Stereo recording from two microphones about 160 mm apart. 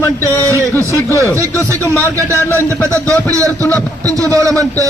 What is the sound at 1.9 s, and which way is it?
A man's voice, 20° right (ahead or behind).